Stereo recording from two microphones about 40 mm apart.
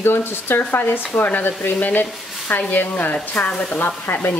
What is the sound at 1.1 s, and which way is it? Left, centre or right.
Speech, left.